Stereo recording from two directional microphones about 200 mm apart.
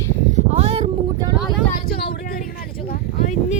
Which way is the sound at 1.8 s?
50° left (ahead or behind).